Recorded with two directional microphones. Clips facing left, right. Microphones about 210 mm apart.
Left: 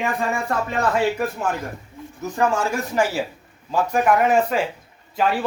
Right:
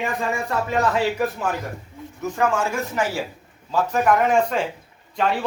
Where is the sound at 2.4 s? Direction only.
35° left (ahead or behind).